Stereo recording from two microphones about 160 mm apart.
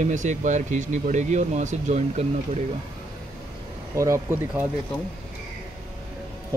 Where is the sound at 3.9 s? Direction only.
20° right (ahead or behind).